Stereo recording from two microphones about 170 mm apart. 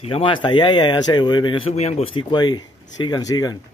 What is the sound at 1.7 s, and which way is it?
Speech, 40° left (ahead or behind).